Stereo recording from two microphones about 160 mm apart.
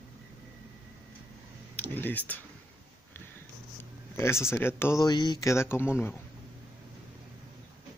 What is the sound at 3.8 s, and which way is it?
Speech, 15° left (ahead or behind).